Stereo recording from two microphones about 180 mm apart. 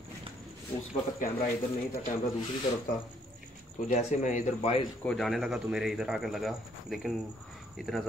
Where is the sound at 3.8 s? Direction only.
40° left (ahead or behind).